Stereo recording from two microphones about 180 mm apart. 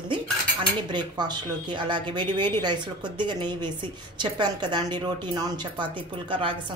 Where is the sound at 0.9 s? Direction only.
25° right (ahead or behind).